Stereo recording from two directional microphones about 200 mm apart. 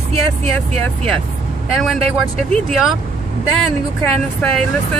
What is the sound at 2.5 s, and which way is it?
Speech, centre (ahead or behind).